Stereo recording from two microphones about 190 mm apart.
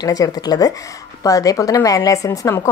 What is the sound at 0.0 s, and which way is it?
A woman's voice, 20° left (ahead or behind).